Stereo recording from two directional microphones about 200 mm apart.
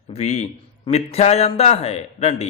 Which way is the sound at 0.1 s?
35° left (ahead or behind).